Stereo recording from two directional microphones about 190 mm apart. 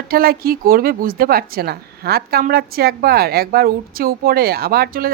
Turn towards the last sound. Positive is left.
turn(degrees=-50)  # may be behind; listen again after turning